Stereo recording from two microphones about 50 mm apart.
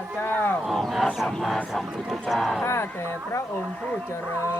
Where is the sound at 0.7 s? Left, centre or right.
Centre.